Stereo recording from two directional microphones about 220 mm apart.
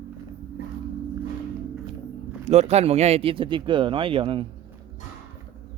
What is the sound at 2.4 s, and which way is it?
Speech, 30° right (ahead or behind).